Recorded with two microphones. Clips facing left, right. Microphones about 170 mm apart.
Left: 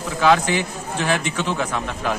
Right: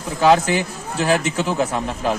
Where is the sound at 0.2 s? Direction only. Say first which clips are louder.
Right 2 dB; 35° right (ahead or behind).